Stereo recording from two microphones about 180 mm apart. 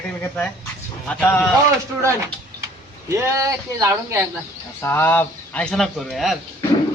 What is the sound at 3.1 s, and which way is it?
Speech, 15° right (ahead or behind).